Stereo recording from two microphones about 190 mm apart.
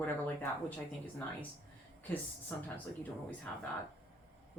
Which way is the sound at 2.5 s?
10° left (ahead or behind).